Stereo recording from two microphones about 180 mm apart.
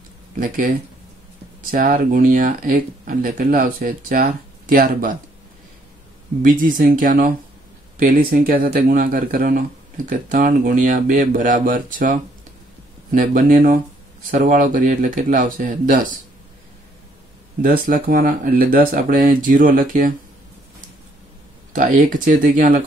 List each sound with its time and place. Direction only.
1.7 s speech: 50° right (ahead or behind)
6.4 s speech: 50° right (ahead or behind)
17.6 s speech: 50° right (ahead or behind)
21.7 s speech: 45° right (ahead or behind)